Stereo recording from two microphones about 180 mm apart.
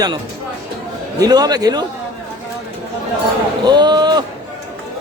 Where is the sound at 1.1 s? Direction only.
20° right (ahead or behind).